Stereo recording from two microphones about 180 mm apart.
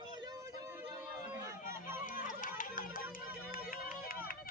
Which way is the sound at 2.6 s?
50° left (ahead or behind).